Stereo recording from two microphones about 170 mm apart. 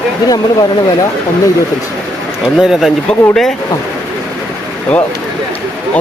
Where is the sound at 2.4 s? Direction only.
Centre (ahead or behind).